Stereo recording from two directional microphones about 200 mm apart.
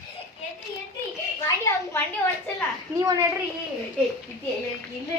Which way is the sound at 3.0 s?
15° right (ahead or behind).